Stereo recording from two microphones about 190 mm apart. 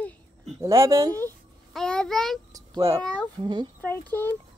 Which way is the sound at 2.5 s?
20° right (ahead or behind).